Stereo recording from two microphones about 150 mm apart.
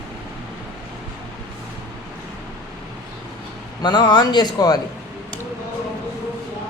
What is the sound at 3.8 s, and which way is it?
A man's voice, 30° left (ahead or behind).